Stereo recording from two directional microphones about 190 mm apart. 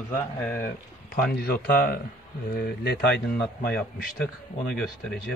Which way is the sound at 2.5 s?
55° left (ahead or behind).